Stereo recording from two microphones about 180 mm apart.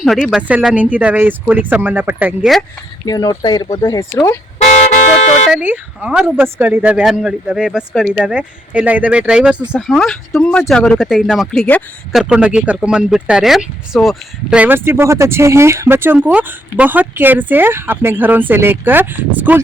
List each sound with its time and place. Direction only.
0.0 s speech: centre (ahead or behind)
3.1 s speech: 20° left (ahead or behind)
4.9 s music: 40° left (ahead or behind)
5.5 s speech: 10° right (ahead or behind)
12.2 s speech: 5° right (ahead or behind)